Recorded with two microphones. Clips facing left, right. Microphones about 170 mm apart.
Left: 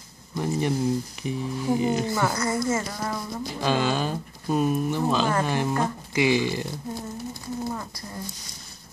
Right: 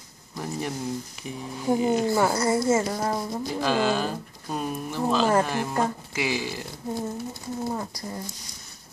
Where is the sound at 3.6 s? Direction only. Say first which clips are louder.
Even; 5° right (ahead or behind).